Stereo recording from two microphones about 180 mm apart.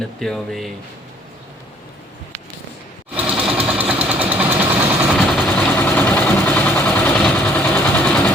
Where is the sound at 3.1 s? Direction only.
5° right (ahead or behind).